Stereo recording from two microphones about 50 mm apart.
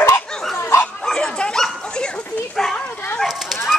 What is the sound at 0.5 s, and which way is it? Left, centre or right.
Dog, left.